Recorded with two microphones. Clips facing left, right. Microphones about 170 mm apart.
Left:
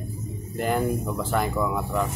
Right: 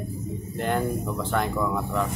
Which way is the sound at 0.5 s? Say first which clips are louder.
Left 2 dB; 5° left (ahead or behind).